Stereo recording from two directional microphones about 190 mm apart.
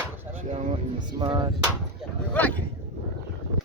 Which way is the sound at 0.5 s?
40° right (ahead or behind).